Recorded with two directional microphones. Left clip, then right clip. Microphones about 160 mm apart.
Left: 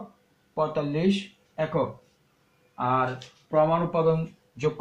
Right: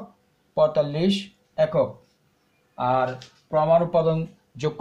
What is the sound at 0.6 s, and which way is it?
Speech, 35° right (ahead or behind).